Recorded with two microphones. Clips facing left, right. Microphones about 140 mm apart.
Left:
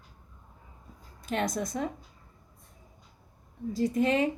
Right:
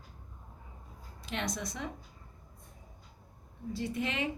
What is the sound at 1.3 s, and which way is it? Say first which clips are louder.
Speech: left 7 dB; 45° left (ahead or behind).